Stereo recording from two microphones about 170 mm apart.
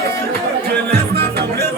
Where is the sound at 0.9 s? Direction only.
75° right (ahead or behind).